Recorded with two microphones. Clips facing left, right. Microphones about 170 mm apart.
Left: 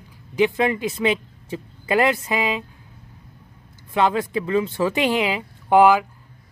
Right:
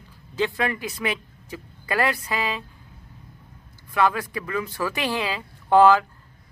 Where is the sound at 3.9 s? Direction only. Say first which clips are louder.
Left 3 dB; 25° left (ahead or behind).